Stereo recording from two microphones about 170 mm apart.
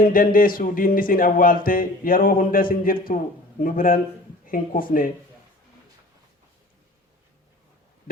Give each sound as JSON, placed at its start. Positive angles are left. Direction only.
{"t": 0.0, "sound": "music", "side_deg": 55}